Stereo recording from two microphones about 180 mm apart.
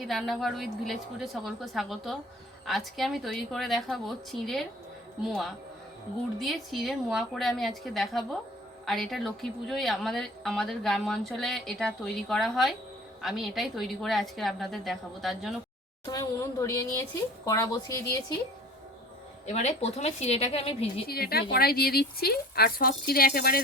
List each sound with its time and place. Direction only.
0.0 s speech: centre (ahead or behind)
16.0 s a woman's voice: 20° left (ahead or behind)
19.5 s a woman's voice: 40° left (ahead or behind)
21.1 s speech: 60° left (ahead or behind)